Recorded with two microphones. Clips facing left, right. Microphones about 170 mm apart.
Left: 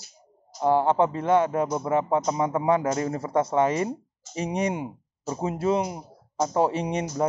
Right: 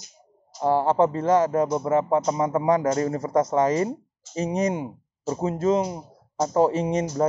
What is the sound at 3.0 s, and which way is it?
Speech, 35° right (ahead or behind).